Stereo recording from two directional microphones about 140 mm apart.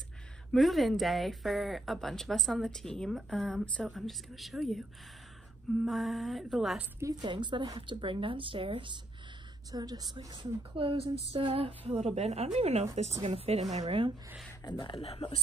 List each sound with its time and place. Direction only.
0.5 s speech: centre (ahead or behind)
5.9 s speech: centre (ahead or behind)
7.0 s a woman's voice: 25° right (ahead or behind); by 14.1 s 45° right (ahead or behind)
14.6 s speech: 30° left (ahead or behind)